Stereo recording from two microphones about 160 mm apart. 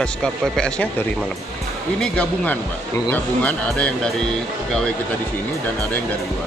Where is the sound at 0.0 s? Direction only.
5° left (ahead or behind).